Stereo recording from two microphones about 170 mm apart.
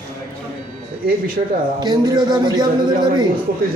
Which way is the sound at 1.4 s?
60° right (ahead or behind).